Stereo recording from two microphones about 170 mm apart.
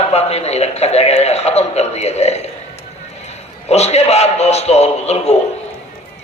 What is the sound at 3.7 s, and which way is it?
A man's voice, 40° left (ahead or behind).